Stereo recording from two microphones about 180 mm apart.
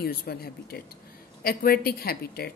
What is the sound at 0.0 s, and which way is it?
Speech, 55° left (ahead or behind).